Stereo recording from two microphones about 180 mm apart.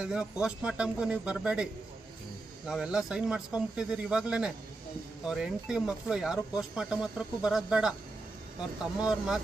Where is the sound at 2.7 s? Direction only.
5° right (ahead or behind).